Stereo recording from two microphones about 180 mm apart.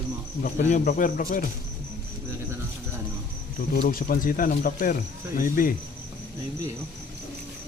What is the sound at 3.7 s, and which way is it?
Speech, 50° left (ahead or behind).